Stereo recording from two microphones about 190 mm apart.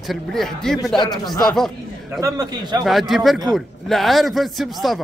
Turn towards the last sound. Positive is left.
turn(degrees=0)  # may be behind; listen again after turning